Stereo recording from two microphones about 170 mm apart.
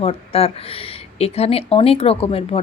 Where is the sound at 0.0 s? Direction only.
35° left (ahead or behind).